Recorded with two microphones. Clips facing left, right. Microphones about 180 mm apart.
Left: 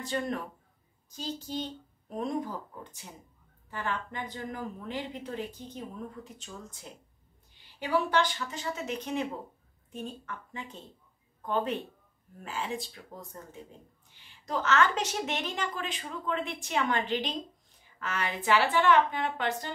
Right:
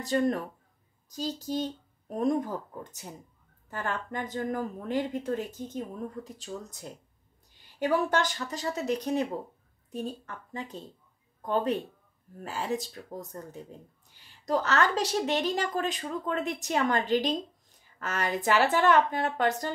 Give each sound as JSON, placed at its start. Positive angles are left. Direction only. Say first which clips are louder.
{"t": 0.0, "sound": "a woman's voice", "louder": "right 6 dB", "side_deg": -40}